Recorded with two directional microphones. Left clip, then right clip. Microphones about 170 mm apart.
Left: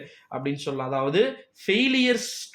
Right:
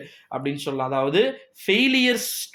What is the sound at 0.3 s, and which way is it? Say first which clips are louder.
Speech: right 2 dB; 40° right (ahead or behind).